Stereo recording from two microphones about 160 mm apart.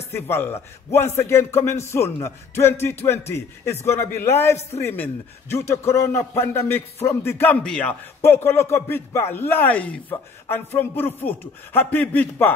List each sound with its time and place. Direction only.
0.1 s speech: 15° left (ahead or behind)